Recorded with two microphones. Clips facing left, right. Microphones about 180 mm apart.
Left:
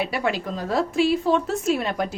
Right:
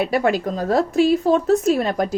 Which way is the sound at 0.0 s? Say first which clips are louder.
Right 6 dB; 45° right (ahead or behind).